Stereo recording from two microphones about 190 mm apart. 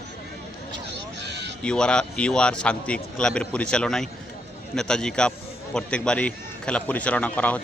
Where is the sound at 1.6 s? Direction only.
5° left (ahead or behind).